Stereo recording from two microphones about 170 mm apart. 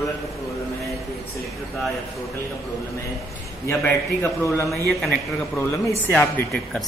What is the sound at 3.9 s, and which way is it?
Speech, 15° left (ahead or behind).